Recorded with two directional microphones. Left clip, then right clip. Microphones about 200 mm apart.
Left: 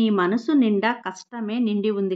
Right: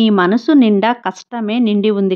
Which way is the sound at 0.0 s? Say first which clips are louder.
Right 8 dB; 45° right (ahead or behind).